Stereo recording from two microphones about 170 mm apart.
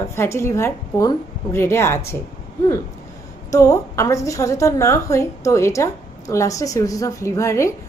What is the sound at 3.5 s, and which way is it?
A woman's voice, 20° left (ahead or behind).